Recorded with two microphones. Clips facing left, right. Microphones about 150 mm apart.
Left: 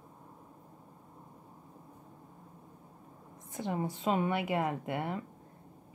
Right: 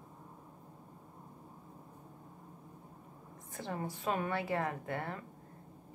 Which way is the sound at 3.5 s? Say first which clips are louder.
Left 5 dB; 20° left (ahead or behind).